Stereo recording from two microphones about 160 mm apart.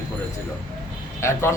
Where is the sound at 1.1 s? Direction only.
15° left (ahead or behind).